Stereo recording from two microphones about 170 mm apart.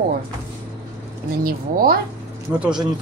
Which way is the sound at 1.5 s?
60° right (ahead or behind).